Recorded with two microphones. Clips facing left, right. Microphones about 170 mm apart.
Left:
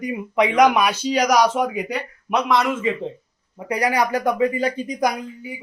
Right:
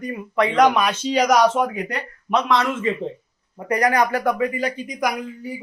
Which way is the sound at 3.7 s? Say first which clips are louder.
Right 2 dB; 10° left (ahead or behind).